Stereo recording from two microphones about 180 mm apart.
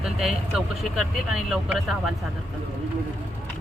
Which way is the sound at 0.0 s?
5° right (ahead or behind).